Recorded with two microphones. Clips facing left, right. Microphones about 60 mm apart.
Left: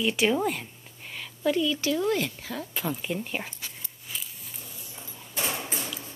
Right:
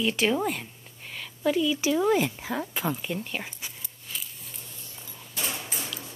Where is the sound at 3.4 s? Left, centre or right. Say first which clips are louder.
Even; centre.